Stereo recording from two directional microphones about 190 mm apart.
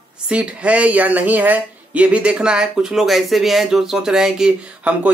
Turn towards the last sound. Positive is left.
turn(degrees=-5)  # may be behind; listen again after turning